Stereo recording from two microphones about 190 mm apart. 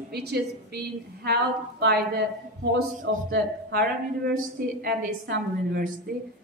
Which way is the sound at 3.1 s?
80° right.